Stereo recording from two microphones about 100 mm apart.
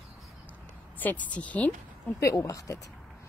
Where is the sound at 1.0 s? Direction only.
15° left (ahead or behind).